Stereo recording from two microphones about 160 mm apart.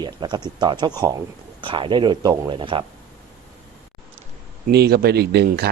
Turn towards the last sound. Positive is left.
turn(degrees=-90)